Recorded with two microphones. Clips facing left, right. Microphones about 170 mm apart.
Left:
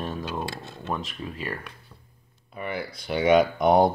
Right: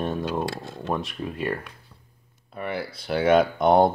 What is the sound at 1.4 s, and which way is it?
Speech, 25° right (ahead or behind).